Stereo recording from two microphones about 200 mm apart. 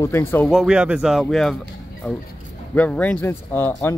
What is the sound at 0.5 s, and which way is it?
Speech, centre (ahead or behind).